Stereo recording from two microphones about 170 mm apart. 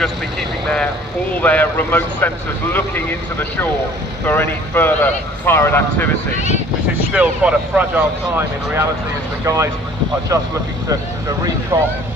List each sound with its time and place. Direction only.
1.4 s speech: 10° left (ahead or behind)
4.3 s speech: 10° left (ahead or behind)
7.1 s speech: 5° right (ahead or behind)
11.7 s speech: 20° right (ahead or behind)